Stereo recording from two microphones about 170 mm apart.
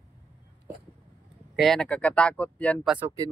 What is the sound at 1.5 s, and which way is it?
Speech, centre (ahead or behind).